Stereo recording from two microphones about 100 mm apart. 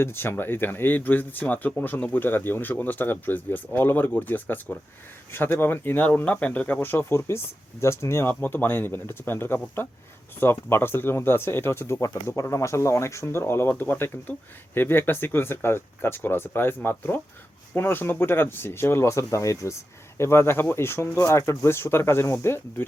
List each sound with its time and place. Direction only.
0.0 s speech: 25° left (ahead or behind)